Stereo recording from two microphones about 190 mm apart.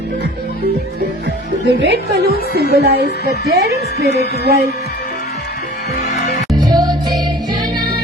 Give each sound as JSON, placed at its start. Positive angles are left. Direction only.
{"t": 1.6, "sound": "a woman's voice", "side_deg": -55}
{"t": 4.0, "sound": "speech", "side_deg": 60}
{"t": 4.4, "sound": "a woman's voice", "side_deg": -55}
{"t": 6.1, "sound": "music", "side_deg": 35}
{"t": 6.6, "sound": "music", "side_deg": -20}